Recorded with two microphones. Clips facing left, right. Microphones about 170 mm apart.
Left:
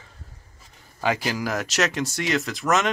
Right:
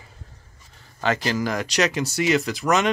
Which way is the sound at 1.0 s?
10° left (ahead or behind).